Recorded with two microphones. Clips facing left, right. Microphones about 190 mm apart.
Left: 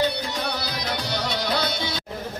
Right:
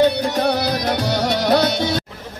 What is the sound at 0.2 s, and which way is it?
Music, 65° right (ahead or behind).